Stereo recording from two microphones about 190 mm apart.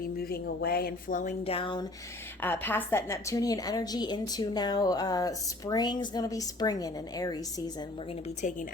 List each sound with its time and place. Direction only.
0.2 s speech: 55° left (ahead or behind); by 1.9 s 25° left (ahead or behind)
2.4 s a woman's voice: 10° left (ahead or behind)